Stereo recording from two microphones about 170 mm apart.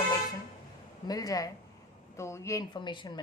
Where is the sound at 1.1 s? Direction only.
20° left (ahead or behind).